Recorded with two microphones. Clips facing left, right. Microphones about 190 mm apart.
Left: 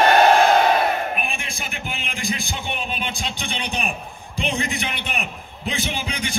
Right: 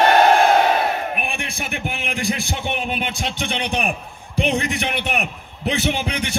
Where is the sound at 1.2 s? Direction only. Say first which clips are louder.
Right 2 dB; 65° right (ahead or behind).